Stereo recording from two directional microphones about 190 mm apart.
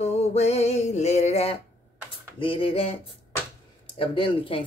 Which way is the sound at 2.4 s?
30° left (ahead or behind).